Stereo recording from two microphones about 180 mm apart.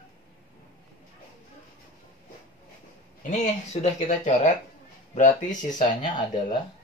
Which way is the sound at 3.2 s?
40° left (ahead or behind).